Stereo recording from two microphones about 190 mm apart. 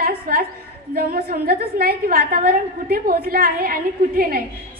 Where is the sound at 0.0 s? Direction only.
50° right (ahead or behind).